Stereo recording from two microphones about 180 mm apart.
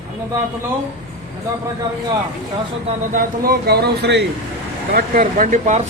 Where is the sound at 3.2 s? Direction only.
60° right (ahead or behind).